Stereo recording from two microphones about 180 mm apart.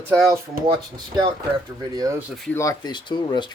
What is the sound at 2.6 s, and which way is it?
Speech, 20° left (ahead or behind).